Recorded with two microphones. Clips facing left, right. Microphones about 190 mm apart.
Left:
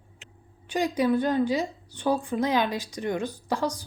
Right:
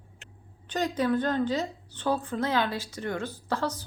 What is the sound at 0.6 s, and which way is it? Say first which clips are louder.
A woman's voice: left 3 dB; 10° left (ahead or behind).